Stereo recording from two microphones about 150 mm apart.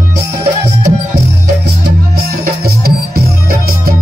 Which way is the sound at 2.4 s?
90° right.